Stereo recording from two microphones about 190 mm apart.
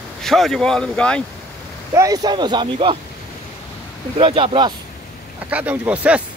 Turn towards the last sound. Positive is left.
turn(degrees=-5)  # may be behind; listen again after turning